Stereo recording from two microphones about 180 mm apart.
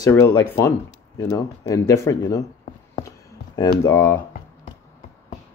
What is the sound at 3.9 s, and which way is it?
Speech, 15° left (ahead or behind).